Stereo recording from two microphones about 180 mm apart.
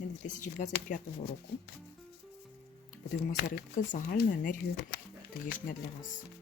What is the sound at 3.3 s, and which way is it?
Speech, 45° left (ahead or behind).